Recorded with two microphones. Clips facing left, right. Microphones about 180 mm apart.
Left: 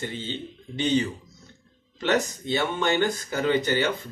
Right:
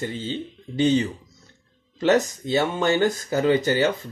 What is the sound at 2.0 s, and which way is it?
Speech, 40° right (ahead or behind).